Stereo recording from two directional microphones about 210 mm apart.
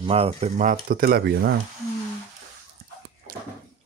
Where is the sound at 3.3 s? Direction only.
45° right (ahead or behind).